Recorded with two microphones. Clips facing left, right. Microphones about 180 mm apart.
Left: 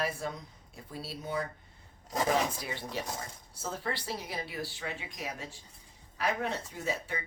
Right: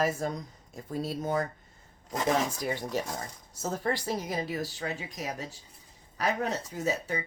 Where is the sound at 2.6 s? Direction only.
45° right (ahead or behind).